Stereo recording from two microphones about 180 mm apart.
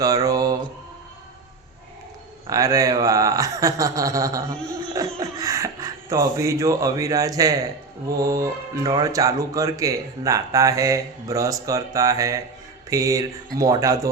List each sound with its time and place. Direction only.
0.0 s mantra: 20° right (ahead or behind)
2.5 s speech: 20° right (ahead or behind)
4.9 s a sound: 20° right (ahead or behind)
8.2 s speech: 20° right (ahead or behind)